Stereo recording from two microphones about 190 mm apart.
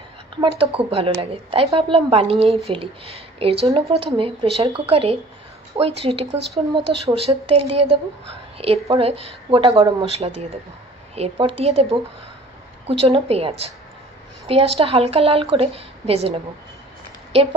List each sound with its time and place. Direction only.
0.4 s a woman's voice: 30° right (ahead or behind)
14.8 s speech: 30° right (ahead or behind)